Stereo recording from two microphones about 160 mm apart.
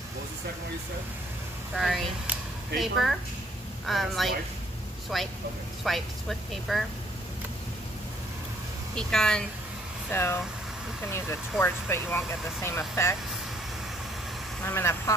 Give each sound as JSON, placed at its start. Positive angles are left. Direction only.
{"t": 1.8, "sound": "speech", "side_deg": 0}
{"t": 8.9, "sound": "speech", "side_deg": 5}
{"t": 14.6, "sound": "speech", "side_deg": 15}